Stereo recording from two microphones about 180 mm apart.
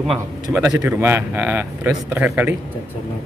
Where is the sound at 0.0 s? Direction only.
Centre (ahead or behind).